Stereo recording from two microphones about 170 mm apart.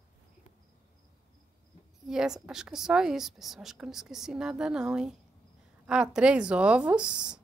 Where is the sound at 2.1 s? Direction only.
5° right (ahead or behind).